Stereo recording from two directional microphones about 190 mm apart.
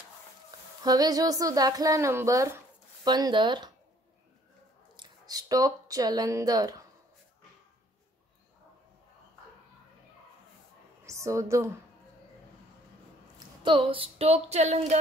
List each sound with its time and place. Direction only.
0.8 s a woman's voice: 20° right (ahead or behind)
4.9 s speech: 20° right (ahead or behind)
11.1 s a woman's voice: 15° right (ahead or behind)
13.6 s a sound: 25° right (ahead or behind)